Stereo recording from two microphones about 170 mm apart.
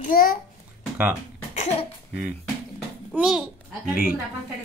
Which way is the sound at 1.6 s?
40° left (ahead or behind).